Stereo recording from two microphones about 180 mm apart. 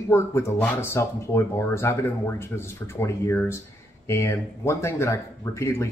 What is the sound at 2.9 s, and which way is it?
Speech, 15° left (ahead or behind).